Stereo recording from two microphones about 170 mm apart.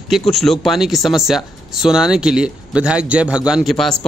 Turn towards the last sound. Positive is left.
turn(degrees=5)  # may be behind; listen again after turning